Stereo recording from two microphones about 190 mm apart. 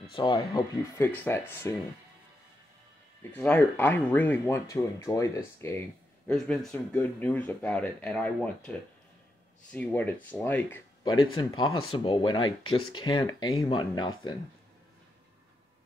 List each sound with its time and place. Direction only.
0.1 s speech: 25° left (ahead or behind)
0.9 s speech: 10° left (ahead or behind)
3.3 s speech: 10° left (ahead or behind)
6.2 s speech: 5° left (ahead or behind)
11.3 s speech: 25° left (ahead or behind)